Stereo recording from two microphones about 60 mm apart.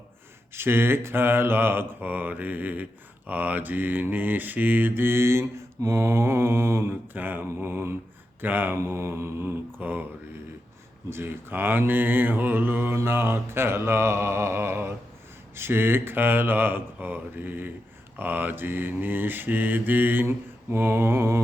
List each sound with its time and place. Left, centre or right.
0.5 s mantra: right
7.1 s mantra: right
7.4 s speech: right
8.4 s mantra: right
8.8 s speech: right
11.1 s mantra: right
13.0 s speech: right
15.5 s mantra: right
20.2 s speech: right